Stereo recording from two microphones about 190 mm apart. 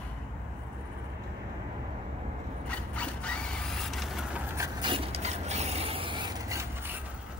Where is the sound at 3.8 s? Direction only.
Centre (ahead or behind).